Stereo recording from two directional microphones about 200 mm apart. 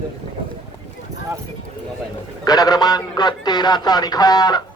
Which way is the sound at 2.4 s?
20° left (ahead or behind).